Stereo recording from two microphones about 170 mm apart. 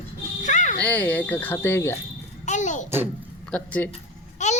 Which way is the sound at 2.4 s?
45° left (ahead or behind).